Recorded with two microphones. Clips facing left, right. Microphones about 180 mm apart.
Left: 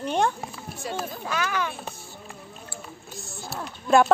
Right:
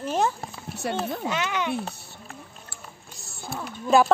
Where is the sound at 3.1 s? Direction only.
Centre (ahead or behind).